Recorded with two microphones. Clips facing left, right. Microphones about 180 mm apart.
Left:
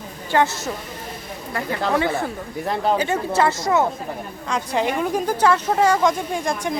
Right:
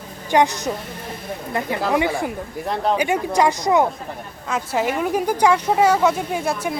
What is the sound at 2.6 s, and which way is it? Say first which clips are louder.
Speech: left 1 dB; centre (ahead or behind).